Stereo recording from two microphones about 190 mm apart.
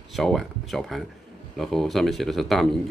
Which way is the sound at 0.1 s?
Centre (ahead or behind).